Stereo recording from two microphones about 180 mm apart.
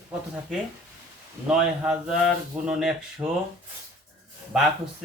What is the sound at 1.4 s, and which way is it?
Speech, 5° right (ahead or behind).